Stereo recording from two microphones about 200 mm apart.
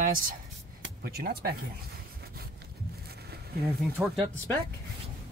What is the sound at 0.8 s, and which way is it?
Speech, 50° right (ahead or behind).